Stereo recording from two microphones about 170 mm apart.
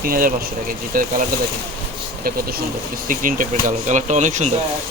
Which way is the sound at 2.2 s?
60° right (ahead or behind).